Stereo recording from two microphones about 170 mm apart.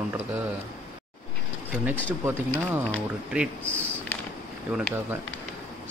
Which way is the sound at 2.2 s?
15° right (ahead or behind).